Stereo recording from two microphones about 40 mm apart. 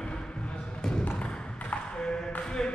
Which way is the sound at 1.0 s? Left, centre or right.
Left.